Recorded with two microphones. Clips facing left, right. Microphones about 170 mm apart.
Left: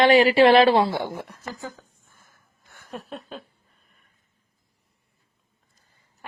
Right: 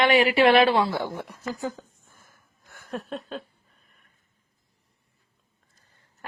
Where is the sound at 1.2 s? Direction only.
10° right (ahead or behind).